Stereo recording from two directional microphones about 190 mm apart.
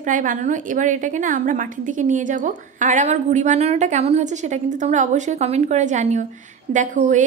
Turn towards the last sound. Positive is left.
turn(degrees=-40)  # may be behind; listen again after turning